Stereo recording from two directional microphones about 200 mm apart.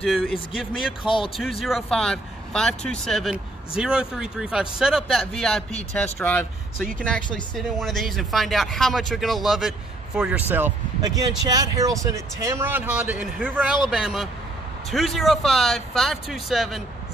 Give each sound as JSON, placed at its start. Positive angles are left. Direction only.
{"t": 0.0, "sound": "speech", "side_deg": 0}
{"t": 1.0, "sound": "speech", "side_deg": 25}
{"t": 1.6, "sound": "speech", "side_deg": 0}